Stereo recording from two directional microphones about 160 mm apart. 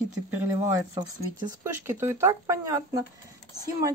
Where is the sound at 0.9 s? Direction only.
25° right (ahead or behind).